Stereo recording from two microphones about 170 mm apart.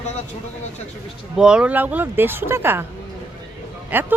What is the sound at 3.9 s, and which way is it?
Speech, 10° right (ahead or behind).